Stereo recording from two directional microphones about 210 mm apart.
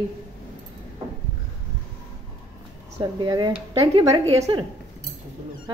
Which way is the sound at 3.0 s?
20° right (ahead or behind).